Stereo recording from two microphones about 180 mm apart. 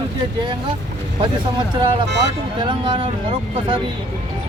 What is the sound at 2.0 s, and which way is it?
Speech, 70° right (ahead or behind).